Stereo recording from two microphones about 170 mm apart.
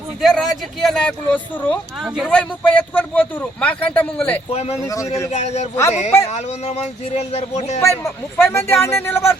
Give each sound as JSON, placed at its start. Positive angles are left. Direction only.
{"t": 0.2, "sound": "a man's voice", "side_deg": 0}
{"t": 4.5, "sound": "speech", "side_deg": 40}
{"t": 4.8, "sound": "a man's voice", "side_deg": 20}
{"t": 5.3, "sound": "speech", "side_deg": 40}
{"t": 7.8, "sound": "a man's voice", "side_deg": 15}